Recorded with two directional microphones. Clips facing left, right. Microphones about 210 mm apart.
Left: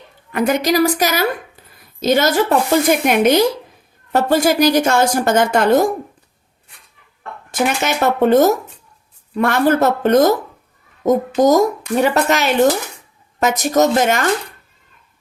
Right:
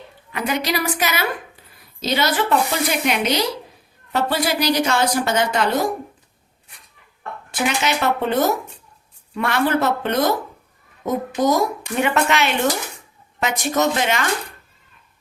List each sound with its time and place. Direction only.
0.3 s a woman's voice: 50° left (ahead or behind)
7.5 s a woman's voice: 45° left (ahead or behind)
11.3 s a woman's voice: 45° left (ahead or behind)